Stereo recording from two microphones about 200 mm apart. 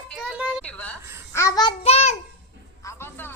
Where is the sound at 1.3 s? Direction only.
15° left (ahead or behind).